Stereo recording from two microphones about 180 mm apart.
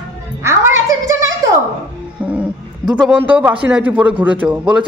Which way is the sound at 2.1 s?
5° right (ahead or behind).